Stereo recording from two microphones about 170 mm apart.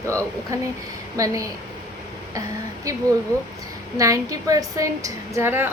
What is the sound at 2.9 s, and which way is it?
A woman's voice, 20° right (ahead or behind).